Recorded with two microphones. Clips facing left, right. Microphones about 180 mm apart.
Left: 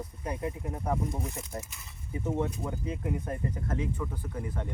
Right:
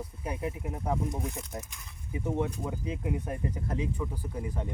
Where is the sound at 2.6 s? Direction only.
10° right (ahead or behind).